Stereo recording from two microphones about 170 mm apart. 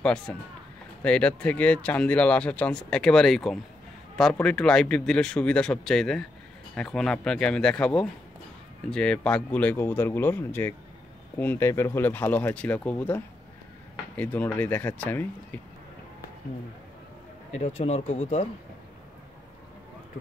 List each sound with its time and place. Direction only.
0.0 s speech: 5° left (ahead or behind)
17.5 s speech: 40° left (ahead or behind)